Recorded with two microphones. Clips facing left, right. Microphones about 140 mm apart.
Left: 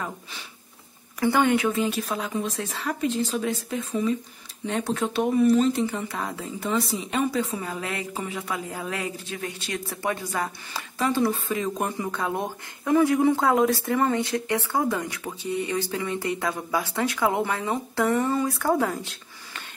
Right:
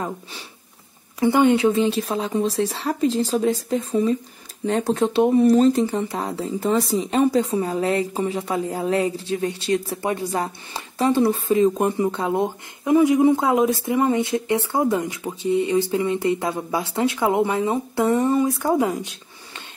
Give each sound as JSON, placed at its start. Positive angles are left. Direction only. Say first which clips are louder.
{"t": 1.2, "sound": "speech", "louder": "right 5 dB", "side_deg": -20}